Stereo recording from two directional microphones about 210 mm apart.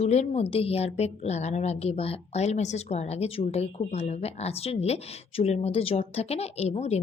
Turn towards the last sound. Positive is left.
turn(degrees=30)  # may be behind; listen again after turning